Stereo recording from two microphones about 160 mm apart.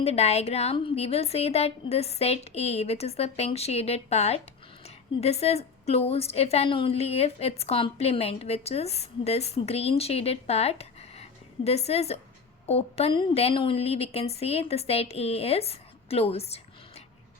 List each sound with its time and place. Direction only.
0.0 s a woman's voice: 40° left (ahead or behind)